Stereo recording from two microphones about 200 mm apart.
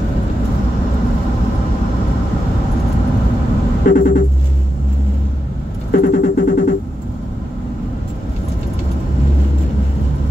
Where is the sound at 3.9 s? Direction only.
45° left (ahead or behind).